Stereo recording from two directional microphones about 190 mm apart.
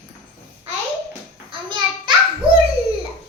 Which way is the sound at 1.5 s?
25° right (ahead or behind).